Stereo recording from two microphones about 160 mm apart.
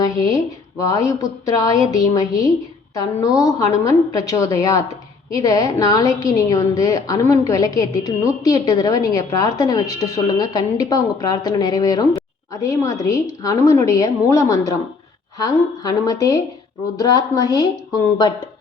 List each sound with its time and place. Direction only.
0.9 s a woman's voice: 20° left (ahead or behind)